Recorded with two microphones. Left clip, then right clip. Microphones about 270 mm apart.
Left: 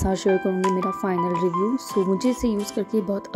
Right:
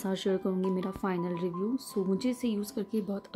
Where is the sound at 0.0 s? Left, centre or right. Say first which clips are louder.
Left 10 dB; centre.